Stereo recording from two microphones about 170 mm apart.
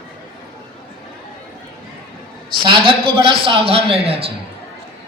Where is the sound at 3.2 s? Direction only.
30° right (ahead or behind).